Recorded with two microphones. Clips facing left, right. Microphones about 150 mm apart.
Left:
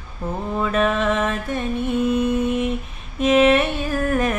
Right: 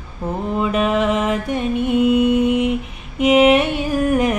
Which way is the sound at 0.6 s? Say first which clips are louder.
Right 2 dB; 15° right (ahead or behind).